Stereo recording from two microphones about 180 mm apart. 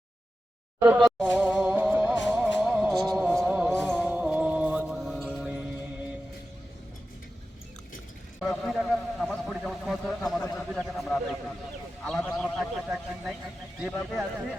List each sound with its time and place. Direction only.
0.9 s music: centre (ahead or behind)
5.2 s mantra: 5° right (ahead or behind)
8.4 s a sound: centre (ahead or behind)